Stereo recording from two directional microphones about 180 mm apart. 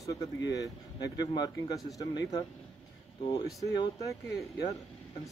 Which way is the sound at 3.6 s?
20° left (ahead or behind).